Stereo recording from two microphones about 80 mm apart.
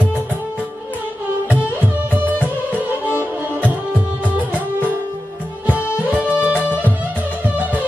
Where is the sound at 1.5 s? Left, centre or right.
Centre.